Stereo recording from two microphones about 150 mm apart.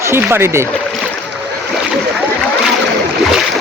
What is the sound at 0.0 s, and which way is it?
Speech, 15° right (ahead or behind).